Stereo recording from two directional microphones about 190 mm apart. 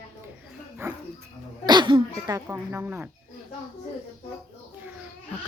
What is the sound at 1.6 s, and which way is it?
Speech, 25° right (ahead or behind).